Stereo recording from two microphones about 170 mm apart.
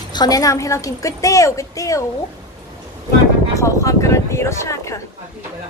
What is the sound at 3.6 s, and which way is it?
Speech, 20° left (ahead or behind).